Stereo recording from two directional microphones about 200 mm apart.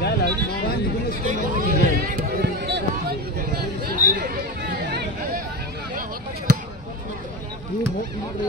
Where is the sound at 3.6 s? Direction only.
50° right (ahead or behind).